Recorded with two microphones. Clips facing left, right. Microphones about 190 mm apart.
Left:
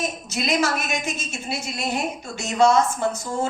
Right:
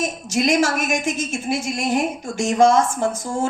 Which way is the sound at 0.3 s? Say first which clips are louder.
Right 5 dB; 50° right (ahead or behind).